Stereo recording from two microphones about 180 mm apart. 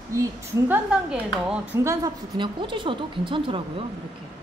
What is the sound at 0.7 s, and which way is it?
A woman's voice, 5° right (ahead or behind).